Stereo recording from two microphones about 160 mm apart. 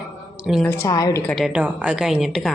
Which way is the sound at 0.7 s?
20° left (ahead or behind).